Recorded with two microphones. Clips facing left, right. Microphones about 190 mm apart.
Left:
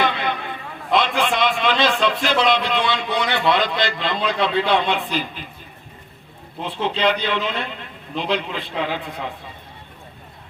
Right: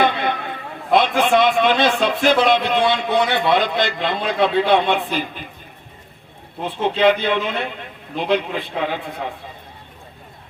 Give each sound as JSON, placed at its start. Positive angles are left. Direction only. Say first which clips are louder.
{"t": 0.0, "sound": "a sound", "louder": "right 3 dB", "side_deg": -50}
{"t": 0.9, "sound": "a man's voice", "louder": "right 4 dB", "side_deg": -50}
{"t": 6.7, "sound": "a man's voice", "louder": "right 4 dB", "side_deg": -50}